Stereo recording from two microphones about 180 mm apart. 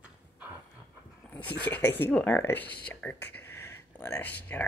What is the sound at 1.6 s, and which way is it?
Speech, 10° left (ahead or behind).